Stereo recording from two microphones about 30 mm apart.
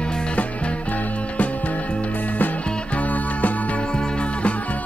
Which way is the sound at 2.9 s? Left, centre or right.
Left.